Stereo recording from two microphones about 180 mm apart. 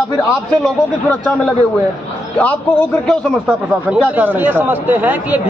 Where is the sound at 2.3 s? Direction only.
10° left (ahead or behind).